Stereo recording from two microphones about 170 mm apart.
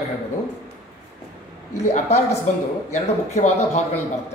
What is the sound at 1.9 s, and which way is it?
A woman's voice, 40° left (ahead or behind).